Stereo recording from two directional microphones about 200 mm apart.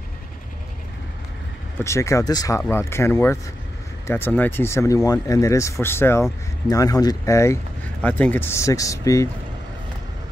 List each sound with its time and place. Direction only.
1.8 s speech: 15° left (ahead or behind)